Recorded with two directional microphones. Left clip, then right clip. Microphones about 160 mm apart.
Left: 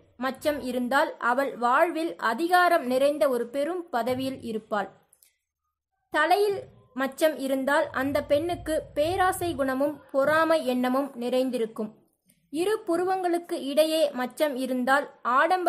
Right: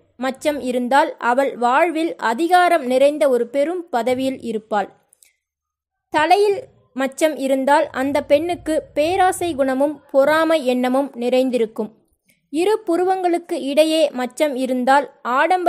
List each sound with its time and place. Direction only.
0.2 s a woman's voice: 40° right (ahead or behind)
6.1 s a woman's voice: 40° right (ahead or behind)